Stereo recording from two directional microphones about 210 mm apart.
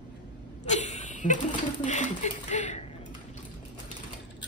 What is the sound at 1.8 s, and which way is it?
Speech, 35° left (ahead or behind).